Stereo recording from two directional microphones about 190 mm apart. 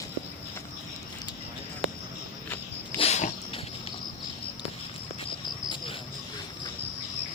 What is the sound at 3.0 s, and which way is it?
Dog, 35° left (ahead or behind).